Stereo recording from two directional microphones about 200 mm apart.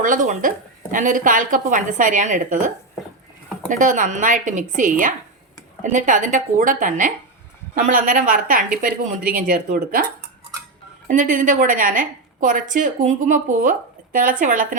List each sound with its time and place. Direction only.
0.0 s a woman's voice: 40° right (ahead or behind)
11.1 s a woman's voice: 40° right (ahead or behind)